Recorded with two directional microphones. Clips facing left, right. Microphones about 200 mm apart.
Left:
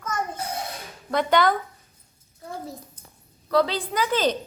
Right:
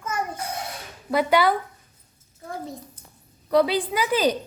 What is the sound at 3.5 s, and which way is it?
Speech, 10° right (ahead or behind).